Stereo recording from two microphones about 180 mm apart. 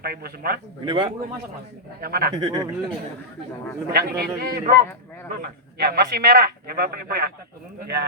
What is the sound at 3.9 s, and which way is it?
Speech, 60° right (ahead or behind).